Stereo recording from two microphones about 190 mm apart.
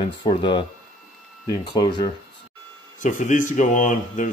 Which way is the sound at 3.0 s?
40° left (ahead or behind).